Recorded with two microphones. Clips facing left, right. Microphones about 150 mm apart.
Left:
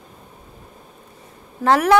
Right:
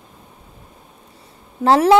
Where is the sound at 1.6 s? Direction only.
25° right (ahead or behind).